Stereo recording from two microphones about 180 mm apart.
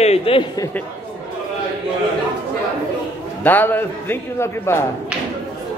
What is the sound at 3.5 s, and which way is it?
A man's voice, 10° left (ahead or behind).